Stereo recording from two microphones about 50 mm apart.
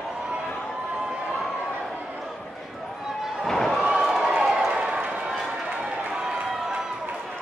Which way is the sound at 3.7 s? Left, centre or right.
Centre.